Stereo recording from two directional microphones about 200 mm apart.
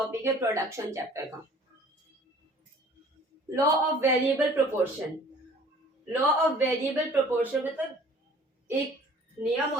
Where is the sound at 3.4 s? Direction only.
15° right (ahead or behind).